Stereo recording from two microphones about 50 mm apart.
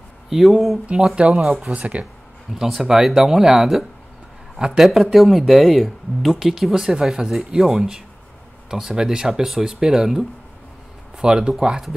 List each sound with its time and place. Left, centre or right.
0.3 s speech: centre
0.9 s speech: centre
1.6 s speech: right
2.5 s speech: centre